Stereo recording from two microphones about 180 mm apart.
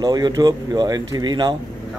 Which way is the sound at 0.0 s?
20° right (ahead or behind).